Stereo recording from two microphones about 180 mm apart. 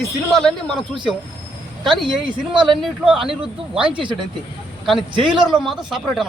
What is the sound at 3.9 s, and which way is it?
Speech, 25° right (ahead or behind).